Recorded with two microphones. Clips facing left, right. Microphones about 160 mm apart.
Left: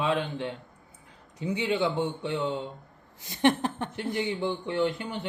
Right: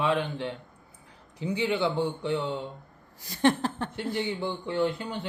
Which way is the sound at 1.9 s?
20° left (ahead or behind).